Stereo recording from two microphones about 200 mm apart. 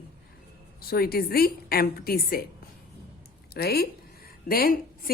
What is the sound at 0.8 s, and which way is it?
A woman's voice, 50° left (ahead or behind).